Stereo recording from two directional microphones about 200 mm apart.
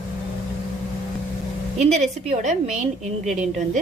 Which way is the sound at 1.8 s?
35° right (ahead or behind).